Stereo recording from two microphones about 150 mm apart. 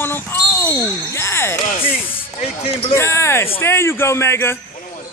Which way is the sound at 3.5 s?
15° left (ahead or behind).